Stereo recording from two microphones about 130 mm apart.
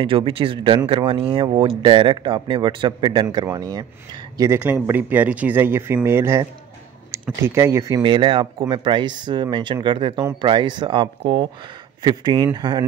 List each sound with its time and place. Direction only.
0.0 s speech: 45° right (ahead or behind)
4.6 s speech: 15° right (ahead or behind)
8.0 s speech: 40° right (ahead or behind)